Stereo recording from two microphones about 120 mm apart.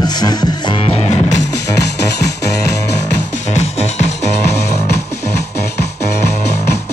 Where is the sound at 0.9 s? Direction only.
60° left (ahead or behind).